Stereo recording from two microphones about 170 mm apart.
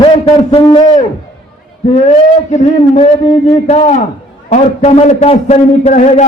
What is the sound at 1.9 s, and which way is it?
A man's voice, 45° left (ahead or behind).